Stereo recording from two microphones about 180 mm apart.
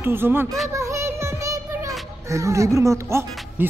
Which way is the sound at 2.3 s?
15° right (ahead or behind).